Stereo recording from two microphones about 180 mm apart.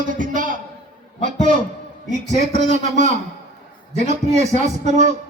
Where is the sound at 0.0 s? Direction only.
45° right (ahead or behind).